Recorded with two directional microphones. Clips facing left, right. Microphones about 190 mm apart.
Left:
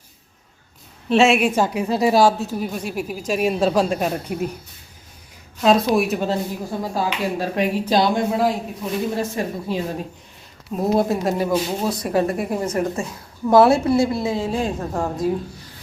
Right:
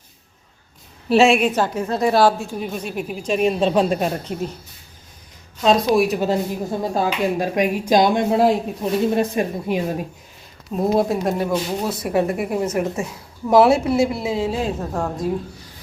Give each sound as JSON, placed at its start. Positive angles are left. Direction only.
{"t": 1.1, "sound": "a woman's voice", "side_deg": 0}
{"t": 5.6, "sound": "a woman's voice", "side_deg": 0}
{"t": 6.9, "sound": "a woman's voice", "side_deg": -15}
{"t": 10.8, "sound": "a woman's voice", "side_deg": 0}